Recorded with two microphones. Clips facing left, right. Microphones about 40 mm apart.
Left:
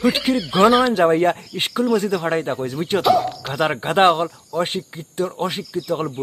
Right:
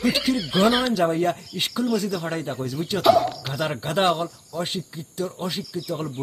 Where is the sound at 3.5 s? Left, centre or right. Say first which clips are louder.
Left 6 dB; left.